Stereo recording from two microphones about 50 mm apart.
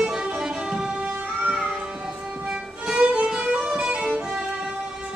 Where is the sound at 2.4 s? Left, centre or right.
Centre.